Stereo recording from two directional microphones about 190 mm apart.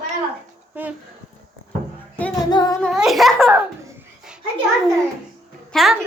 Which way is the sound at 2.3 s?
20° left (ahead or behind).